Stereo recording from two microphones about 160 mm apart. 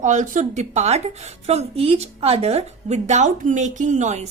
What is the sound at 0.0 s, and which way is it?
A woman's voice, 50° right (ahead or behind).